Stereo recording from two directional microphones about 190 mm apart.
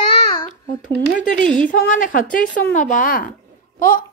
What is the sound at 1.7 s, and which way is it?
A woman's voice, 45° left (ahead or behind).